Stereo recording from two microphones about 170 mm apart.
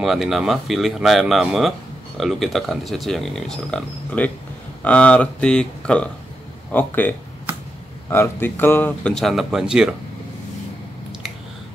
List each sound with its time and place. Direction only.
0.0 s speech: centre (ahead or behind)